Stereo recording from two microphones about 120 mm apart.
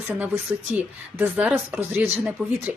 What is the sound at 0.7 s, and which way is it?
A woman's voice, 15° right (ahead or behind).